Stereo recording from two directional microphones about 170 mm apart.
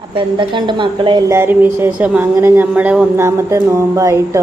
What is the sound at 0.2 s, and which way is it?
A woman's voice, 30° right (ahead or behind).